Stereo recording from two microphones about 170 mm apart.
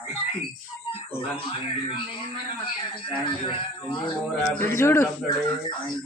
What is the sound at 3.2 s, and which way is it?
Speech, 30° left (ahead or behind).